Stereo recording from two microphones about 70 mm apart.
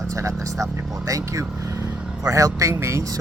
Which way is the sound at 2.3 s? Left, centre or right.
Right.